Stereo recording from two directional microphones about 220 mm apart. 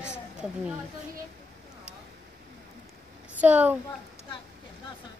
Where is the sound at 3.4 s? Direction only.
5° right (ahead or behind).